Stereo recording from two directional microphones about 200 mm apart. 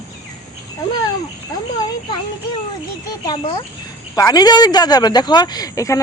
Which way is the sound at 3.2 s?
20° left (ahead or behind).